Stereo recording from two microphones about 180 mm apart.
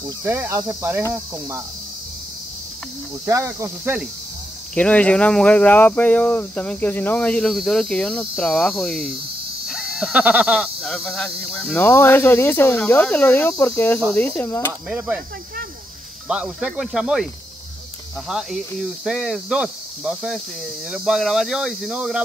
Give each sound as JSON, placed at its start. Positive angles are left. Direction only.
{"t": 0.2, "sound": "speech", "side_deg": -15}
{"t": 3.3, "sound": "speech", "side_deg": -15}
{"t": 4.7, "sound": "speech", "side_deg": 5}
{"t": 9.7, "sound": "goat", "side_deg": -5}
{"t": 10.8, "sound": "speech", "side_deg": 5}
{"t": 14.9, "sound": "speech", "side_deg": -5}
{"t": 16.3, "sound": "speech", "side_deg": -5}
{"t": 18.3, "sound": "speech", "side_deg": 0}